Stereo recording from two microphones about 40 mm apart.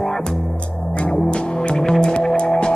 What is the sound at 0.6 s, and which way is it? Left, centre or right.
Music, left.